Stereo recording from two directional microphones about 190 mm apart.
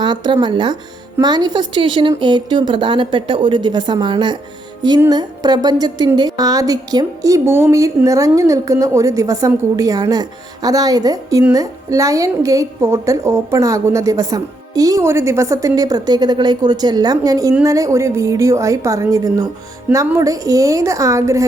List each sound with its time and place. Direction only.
0.0 s a woman's voice: 25° right (ahead or behind)